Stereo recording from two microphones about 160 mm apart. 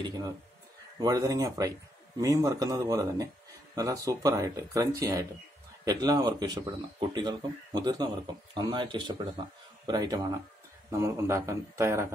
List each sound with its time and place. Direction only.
0.0 s a man's voice: 25° right (ahead or behind)